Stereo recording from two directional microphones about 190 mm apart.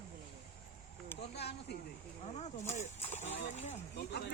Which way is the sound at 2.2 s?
35° left (ahead or behind).